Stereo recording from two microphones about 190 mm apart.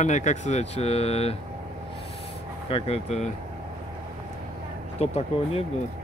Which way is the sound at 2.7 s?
35° left (ahead or behind).